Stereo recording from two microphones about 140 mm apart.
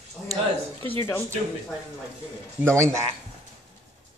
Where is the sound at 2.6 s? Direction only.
20° right (ahead or behind).